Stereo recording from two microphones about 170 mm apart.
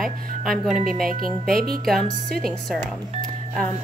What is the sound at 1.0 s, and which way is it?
Speech, 60° right (ahead or behind).